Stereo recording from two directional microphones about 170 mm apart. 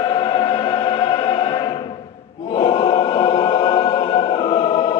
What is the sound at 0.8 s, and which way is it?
Music, 30° left (ahead or behind).